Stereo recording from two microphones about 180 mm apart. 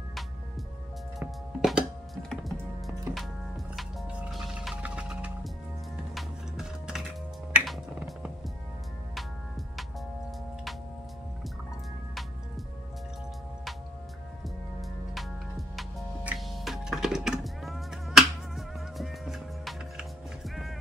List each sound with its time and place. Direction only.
1.2 s music: 5° right (ahead or behind)
2.5 s music: 15° right (ahead or behind)
14.8 s music: centre (ahead or behind)